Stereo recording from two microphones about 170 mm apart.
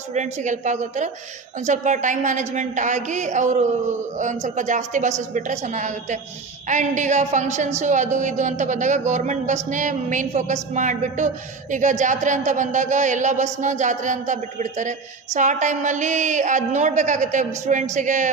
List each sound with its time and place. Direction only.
0.1 s a woman's voice: 45° right (ahead or behind)